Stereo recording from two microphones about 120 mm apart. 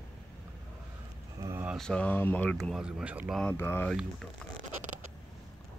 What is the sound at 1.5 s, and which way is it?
Mantra, 15° right (ahead or behind).